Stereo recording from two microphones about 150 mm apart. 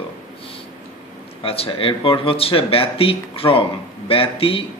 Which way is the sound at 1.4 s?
40° left (ahead or behind).